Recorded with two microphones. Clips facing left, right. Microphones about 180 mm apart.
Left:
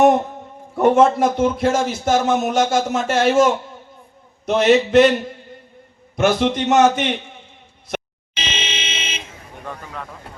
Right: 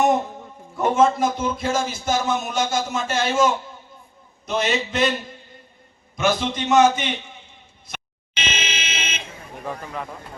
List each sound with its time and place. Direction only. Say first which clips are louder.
0.8 s speech: left 4 dB; 65° left (ahead or behind)
6.1 s a man's voice: left 5 dB; 65° left (ahead or behind)
8.4 s fire alarm: left 1 dB; 30° left (ahead or behind)
9.6 s speech: right 2 dB; 5° right (ahead or behind)